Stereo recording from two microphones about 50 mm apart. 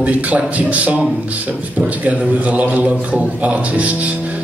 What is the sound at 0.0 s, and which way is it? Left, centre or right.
Speech, right.